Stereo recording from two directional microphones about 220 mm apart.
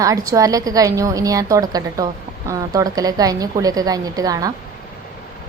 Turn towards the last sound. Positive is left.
turn(degrees=-15)  # may be behind; listen again after turning